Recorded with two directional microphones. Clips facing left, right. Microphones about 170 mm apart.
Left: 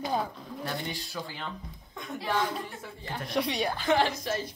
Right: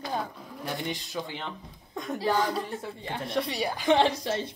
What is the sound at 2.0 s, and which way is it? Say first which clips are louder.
Speech: right 4 dB; 35° right (ahead or behind).